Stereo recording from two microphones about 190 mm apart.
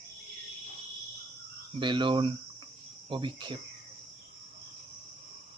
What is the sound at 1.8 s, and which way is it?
Speech, 25° right (ahead or behind).